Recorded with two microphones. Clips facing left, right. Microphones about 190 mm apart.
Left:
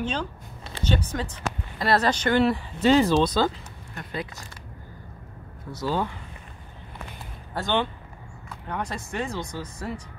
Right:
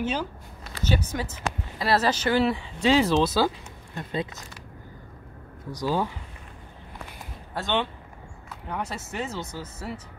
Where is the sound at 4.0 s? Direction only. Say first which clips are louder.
Right 3 dB; 25° right (ahead or behind).